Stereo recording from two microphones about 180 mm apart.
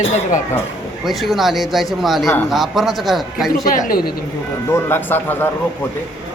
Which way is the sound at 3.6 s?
50° left (ahead or behind).